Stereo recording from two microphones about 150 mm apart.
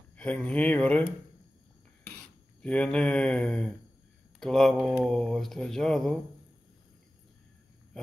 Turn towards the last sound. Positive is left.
turn(degrees=5)  # may be behind; listen again after turning